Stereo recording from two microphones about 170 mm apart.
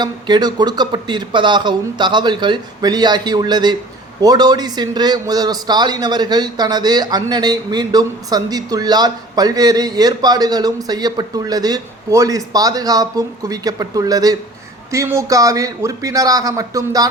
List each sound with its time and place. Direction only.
0.0 s a man's voice: 25° right (ahead or behind)